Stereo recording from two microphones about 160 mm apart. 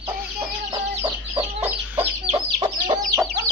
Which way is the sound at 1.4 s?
10° right (ahead or behind).